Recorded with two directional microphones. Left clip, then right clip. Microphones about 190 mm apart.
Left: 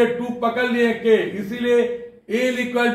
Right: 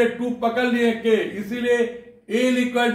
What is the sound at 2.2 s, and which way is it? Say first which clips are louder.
Speech: even; 10° left (ahead or behind).